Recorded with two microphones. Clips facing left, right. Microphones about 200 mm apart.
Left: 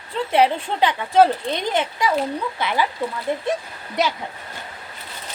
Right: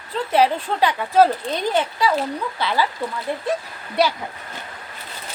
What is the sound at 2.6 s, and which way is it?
Speech, 20° left (ahead or behind).